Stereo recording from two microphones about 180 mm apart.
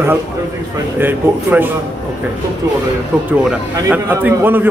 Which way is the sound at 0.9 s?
10° right (ahead or behind).